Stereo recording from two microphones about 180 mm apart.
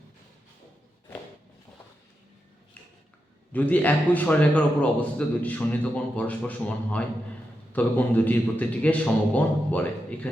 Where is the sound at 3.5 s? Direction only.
10° left (ahead or behind).